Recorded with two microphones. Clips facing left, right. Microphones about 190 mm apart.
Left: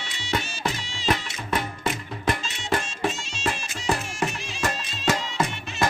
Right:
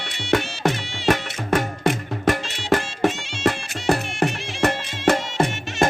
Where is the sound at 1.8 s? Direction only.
65° right (ahead or behind).